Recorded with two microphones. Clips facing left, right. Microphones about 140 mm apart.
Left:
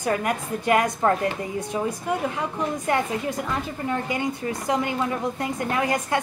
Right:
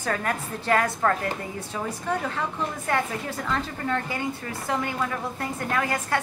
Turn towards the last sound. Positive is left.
turn(degrees=20)  # may be behind; listen again after turning